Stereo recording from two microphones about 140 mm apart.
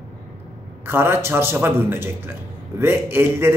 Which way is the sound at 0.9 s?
15° right (ahead or behind).